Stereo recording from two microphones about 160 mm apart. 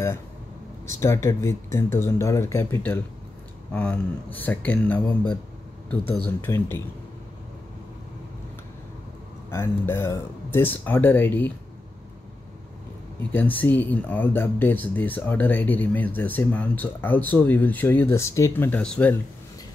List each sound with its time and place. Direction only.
0.8 s speech: 15° left (ahead or behind)
5.0 s speech: 30° left (ahead or behind)
6.2 s speech: 15° left (ahead or behind)
9.5 s speech: 15° left (ahead or behind)
13.3 s speech: 10° left (ahead or behind)